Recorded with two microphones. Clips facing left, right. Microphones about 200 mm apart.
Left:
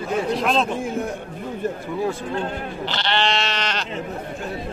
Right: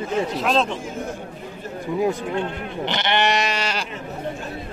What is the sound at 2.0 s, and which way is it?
Speech, 20° right (ahead or behind).